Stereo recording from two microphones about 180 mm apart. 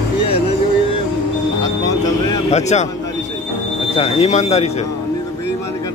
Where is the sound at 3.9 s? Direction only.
35° left (ahead or behind).